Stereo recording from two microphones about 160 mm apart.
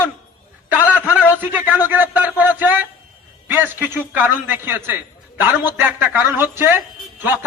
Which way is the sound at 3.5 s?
10° right (ahead or behind).